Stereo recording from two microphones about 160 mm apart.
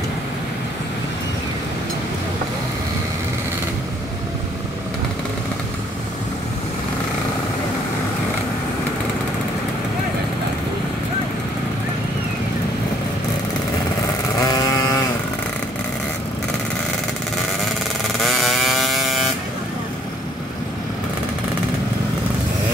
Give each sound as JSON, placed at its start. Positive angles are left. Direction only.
{"t": 14.4, "sound": "vehicle", "side_deg": 20}
{"t": 18.2, "sound": "vehicle", "side_deg": 0}